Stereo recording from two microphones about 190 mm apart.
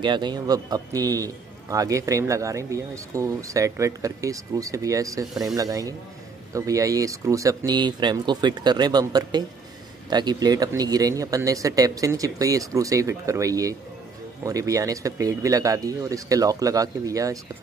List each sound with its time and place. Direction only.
0.0 s a man's voice: 25° right (ahead or behind)